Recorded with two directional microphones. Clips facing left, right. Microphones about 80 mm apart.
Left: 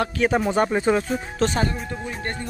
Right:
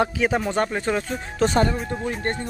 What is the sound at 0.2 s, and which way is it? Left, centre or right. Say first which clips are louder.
Speech: left 2 dB; centre.